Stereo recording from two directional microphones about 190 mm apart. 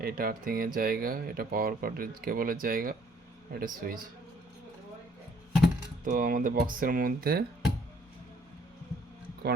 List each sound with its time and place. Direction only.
0.0 s speech: 50° right (ahead or behind)
6.1 s speech: 45° right (ahead or behind)